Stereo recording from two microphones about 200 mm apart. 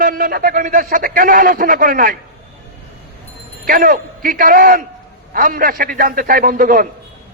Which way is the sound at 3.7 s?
45° right (ahead or behind).